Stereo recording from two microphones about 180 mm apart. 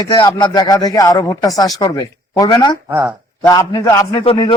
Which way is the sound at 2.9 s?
15° right (ahead or behind).